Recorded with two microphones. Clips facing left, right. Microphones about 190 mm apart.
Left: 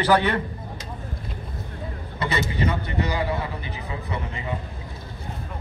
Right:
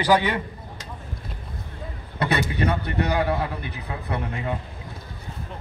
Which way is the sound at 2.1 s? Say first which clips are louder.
Right 2 dB; 60° right (ahead or behind).